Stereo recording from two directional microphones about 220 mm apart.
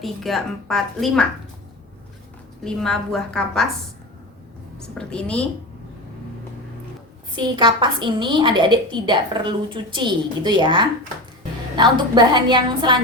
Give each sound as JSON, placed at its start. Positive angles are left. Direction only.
{"t": 0.0, "sound": "a woman's voice", "side_deg": 0}
{"t": 2.6, "sound": "a woman's voice", "side_deg": 0}
{"t": 4.9, "sound": "a woman's voice", "side_deg": 5}
{"t": 7.3, "sound": "a woman's voice", "side_deg": -20}